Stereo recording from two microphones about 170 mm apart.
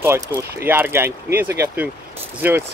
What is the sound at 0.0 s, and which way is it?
Speech, 15° right (ahead or behind).